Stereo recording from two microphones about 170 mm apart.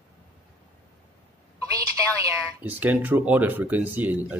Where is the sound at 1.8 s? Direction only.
20° right (ahead or behind).